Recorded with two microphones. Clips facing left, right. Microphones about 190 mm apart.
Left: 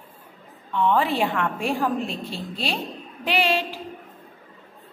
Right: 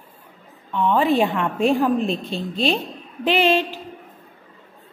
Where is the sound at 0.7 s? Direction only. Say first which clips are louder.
Right 3 dB; 15° right (ahead or behind).